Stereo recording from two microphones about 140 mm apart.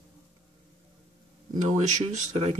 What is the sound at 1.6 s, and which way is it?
Speech, 60° right (ahead or behind).